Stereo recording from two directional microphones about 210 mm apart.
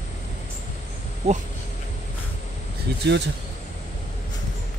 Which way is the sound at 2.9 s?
50° right (ahead or behind).